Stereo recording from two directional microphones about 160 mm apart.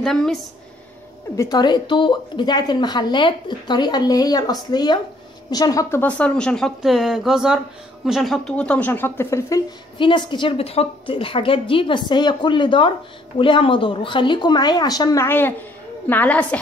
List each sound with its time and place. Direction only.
0.0 s speech: centre (ahead or behind)
1.3 s a woman's voice: 20° left (ahead or behind)
9.9 s a woman's voice: 30° left (ahead or behind); by 16.4 s 10° left (ahead or behind)